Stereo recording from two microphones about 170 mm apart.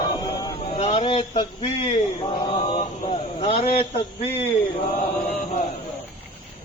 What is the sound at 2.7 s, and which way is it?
A man's voice, 45° left (ahead or behind).